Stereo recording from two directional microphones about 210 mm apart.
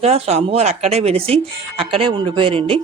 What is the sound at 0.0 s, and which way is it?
Speech, 30° right (ahead or behind).